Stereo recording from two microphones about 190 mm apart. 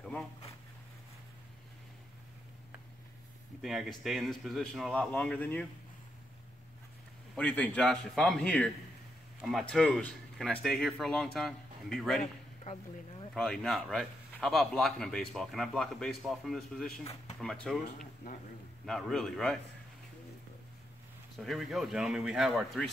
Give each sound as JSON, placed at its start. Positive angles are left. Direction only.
{"t": 3.6, "sound": "a man's voice", "side_deg": 0}
{"t": 7.3, "sound": "a man's voice", "side_deg": 5}
{"t": 13.3, "sound": "a man's voice", "side_deg": 0}
{"t": 17.0, "sound": "speech", "side_deg": 35}
{"t": 17.4, "sound": "a man's voice", "side_deg": 0}
{"t": 18.9, "sound": "a man's voice", "side_deg": 5}
{"t": 21.4, "sound": "a man's voice", "side_deg": 0}